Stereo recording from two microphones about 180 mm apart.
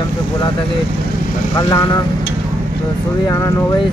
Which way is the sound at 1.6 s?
20° left (ahead or behind).